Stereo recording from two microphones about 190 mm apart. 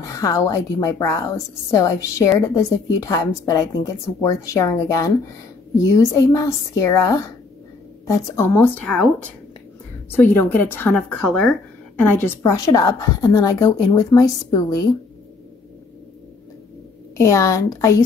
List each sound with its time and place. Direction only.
0.0 s a woman's voice: 15° left (ahead or behind)
17.2 s a woman's voice: 15° left (ahead or behind)